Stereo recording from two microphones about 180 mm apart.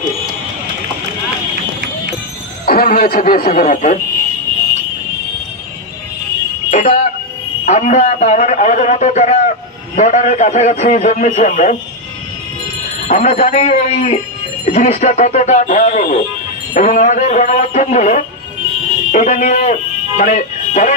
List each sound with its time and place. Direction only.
2.6 s speech: 55° left (ahead or behind)
6.7 s a sound: 40° left (ahead or behind)
7.6 s speech: 40° left (ahead or behind)
13.1 s speech: 35° left (ahead or behind)